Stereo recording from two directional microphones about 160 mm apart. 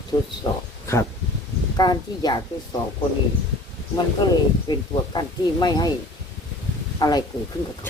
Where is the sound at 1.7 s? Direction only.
25° left (ahead or behind).